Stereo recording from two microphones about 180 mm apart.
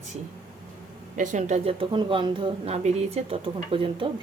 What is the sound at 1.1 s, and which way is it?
A woman's voice, 45° right (ahead or behind).